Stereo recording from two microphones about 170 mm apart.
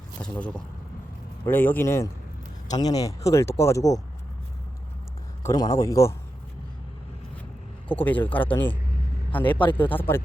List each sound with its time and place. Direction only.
0.2 s speech: 5° left (ahead or behind)
5.4 s speech: 20° left (ahead or behind)
8.0 s speech: 10° left (ahead or behind)